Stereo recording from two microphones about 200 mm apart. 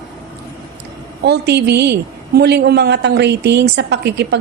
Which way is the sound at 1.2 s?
55° right (ahead or behind).